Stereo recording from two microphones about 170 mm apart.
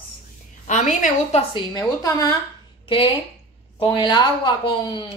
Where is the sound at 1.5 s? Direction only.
25° left (ahead or behind).